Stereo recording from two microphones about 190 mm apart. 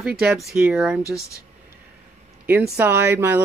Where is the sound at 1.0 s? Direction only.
15° left (ahead or behind).